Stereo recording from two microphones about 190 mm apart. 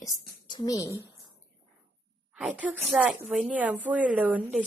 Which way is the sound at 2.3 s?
10° right (ahead or behind).